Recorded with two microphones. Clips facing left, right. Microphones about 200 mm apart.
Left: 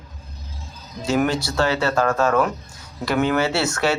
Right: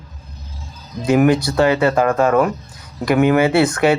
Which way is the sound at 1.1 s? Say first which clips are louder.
Right 7 dB; 15° right (ahead or behind).